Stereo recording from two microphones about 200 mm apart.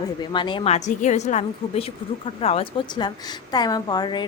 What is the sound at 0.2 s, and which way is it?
A woman's voice, 25° left (ahead or behind).